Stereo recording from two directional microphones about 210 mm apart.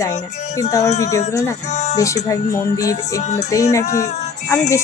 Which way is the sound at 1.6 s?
30° left (ahead or behind).